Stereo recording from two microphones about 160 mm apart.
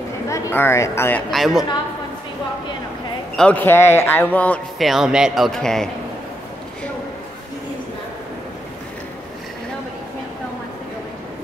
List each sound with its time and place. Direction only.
0.3 s speech: 15° left (ahead or behind)
1.3 s a man's voice: centre (ahead or behind)
3.3 s a man's voice: 10° left (ahead or behind)